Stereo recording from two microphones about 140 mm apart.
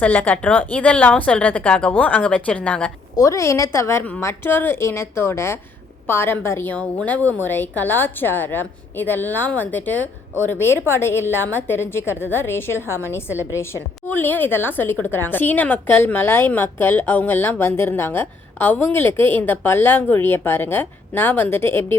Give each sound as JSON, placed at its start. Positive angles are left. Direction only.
{"t": 0.0, "sound": "a woman's voice", "side_deg": 10}
{"t": 3.2, "sound": "a woman's voice", "side_deg": 25}